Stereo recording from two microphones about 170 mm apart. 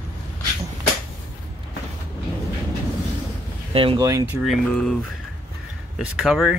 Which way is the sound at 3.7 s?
30° right (ahead or behind).